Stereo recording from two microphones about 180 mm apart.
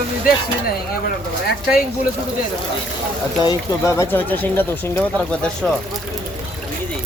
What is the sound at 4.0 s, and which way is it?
Speech, 10° left (ahead or behind).